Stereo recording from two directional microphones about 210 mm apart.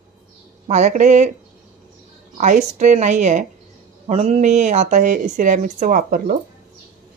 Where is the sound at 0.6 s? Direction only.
35° right (ahead or behind).